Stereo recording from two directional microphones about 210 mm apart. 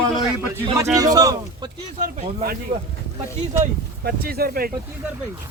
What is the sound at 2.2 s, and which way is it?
Speech, 45° right (ahead or behind).